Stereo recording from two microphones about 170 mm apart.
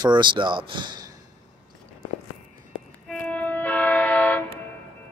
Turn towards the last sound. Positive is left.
turn(degrees=10)  # may be behind; listen again after turning